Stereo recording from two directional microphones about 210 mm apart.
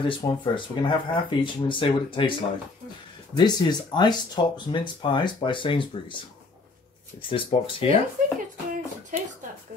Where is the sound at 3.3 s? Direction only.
20° left (ahead or behind).